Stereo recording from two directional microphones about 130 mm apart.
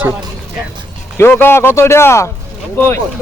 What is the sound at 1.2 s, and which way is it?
Speech, 15° left (ahead or behind).